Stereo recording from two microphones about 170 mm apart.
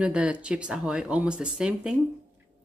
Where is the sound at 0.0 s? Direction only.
5° right (ahead or behind).